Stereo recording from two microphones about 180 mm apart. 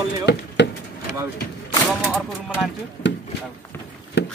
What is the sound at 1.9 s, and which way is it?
Speech, centre (ahead or behind).